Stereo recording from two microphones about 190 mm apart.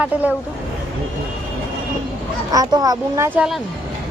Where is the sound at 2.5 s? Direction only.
20° right (ahead or behind).